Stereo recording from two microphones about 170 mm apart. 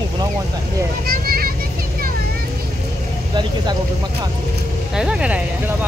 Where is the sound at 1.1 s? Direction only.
60° right (ahead or behind).